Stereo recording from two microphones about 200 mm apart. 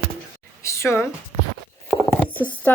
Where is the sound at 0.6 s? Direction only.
15° left (ahead or behind).